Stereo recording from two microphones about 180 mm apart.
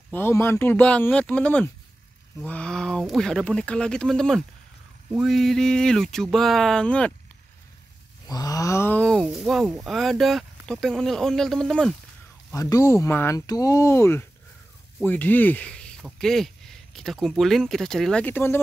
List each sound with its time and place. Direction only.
0.1 s speech: 15° left (ahead or behind)
8.3 s speech: 20° left (ahead or behind); by 11.9 s centre (ahead or behind)
12.5 s speech: 20° left (ahead or behind)